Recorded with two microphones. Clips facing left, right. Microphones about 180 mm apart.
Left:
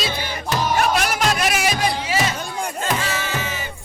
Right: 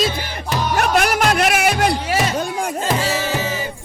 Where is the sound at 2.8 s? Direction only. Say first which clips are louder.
Right 4 dB; 35° right (ahead or behind).